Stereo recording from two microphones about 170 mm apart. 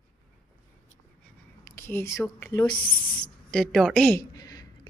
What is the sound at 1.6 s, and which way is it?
Speech, 15° left (ahead or behind).